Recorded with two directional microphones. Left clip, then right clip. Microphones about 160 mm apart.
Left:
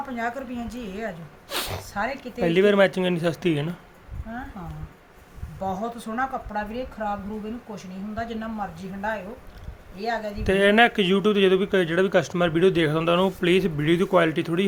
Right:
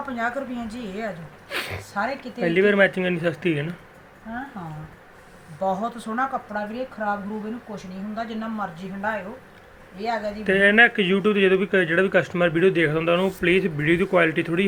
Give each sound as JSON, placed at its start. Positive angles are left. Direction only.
{"t": 0.2, "sound": "speech", "side_deg": 15}
{"t": 5.5, "sound": "speech", "side_deg": 10}
{"t": 7.8, "sound": "speech", "side_deg": 15}
{"t": 10.4, "sound": "speech", "side_deg": 25}